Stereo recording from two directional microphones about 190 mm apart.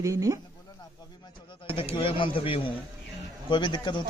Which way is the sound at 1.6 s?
30° left (ahead or behind).